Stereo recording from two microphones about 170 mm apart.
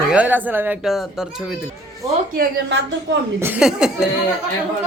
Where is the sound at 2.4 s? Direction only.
90° right.